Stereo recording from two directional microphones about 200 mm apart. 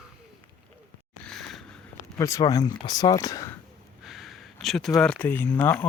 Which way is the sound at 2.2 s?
15° left (ahead or behind).